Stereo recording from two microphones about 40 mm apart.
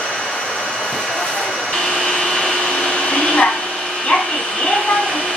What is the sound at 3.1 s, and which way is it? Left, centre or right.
Vacuum cleaner, centre.